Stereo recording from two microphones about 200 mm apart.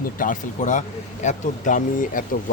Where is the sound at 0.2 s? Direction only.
40° left (ahead or behind).